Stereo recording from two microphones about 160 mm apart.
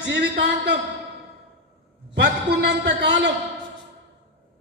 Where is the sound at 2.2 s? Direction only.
90° right.